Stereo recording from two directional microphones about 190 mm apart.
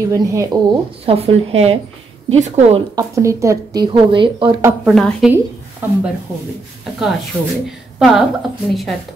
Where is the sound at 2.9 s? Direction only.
15° right (ahead or behind).